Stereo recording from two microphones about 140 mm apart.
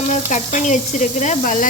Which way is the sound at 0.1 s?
60° left (ahead or behind).